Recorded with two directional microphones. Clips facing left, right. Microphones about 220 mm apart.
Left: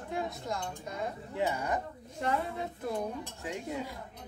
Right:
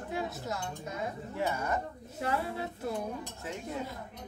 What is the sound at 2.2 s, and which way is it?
Speech, 5° right (ahead or behind).